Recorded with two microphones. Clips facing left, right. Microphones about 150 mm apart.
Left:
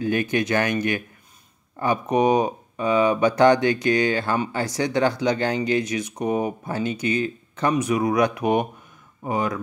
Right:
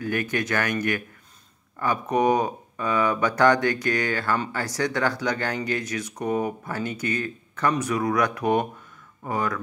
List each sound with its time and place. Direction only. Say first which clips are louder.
0.0 s speech: left 4 dB; 20° left (ahead or behind)